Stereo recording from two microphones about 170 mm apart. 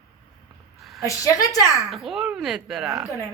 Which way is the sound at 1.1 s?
20° left (ahead or behind).